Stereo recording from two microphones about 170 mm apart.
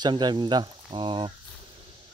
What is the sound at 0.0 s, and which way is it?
Speech, 25° right (ahead or behind).